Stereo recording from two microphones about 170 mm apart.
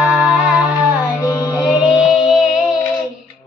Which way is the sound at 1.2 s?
20° left (ahead or behind).